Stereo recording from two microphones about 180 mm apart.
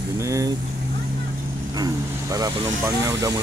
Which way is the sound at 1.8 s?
20° right (ahead or behind).